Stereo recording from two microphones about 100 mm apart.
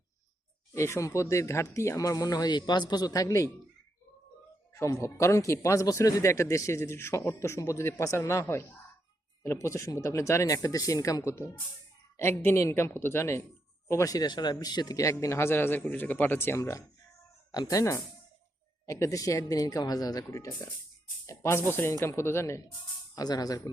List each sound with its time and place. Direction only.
0.7 s speech: 30° left (ahead or behind)
4.7 s speech: 30° left (ahead or behind)
23.1 s speech: 40° left (ahead or behind)